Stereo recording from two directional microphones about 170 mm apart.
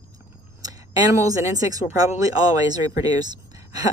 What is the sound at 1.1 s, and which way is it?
Speech, 20° right (ahead or behind).